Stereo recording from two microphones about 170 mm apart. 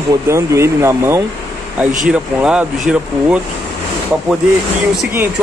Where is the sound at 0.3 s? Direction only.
15° right (ahead or behind).